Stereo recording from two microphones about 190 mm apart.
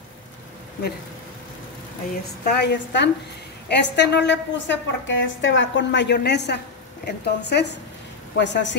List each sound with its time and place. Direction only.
2.4 s a woman's voice: 60° left (ahead or behind)